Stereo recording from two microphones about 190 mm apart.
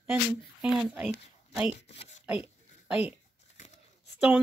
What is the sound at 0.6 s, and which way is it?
Speech, 5° right (ahead or behind).